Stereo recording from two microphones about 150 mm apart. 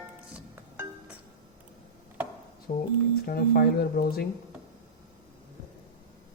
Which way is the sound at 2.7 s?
65° left (ahead or behind).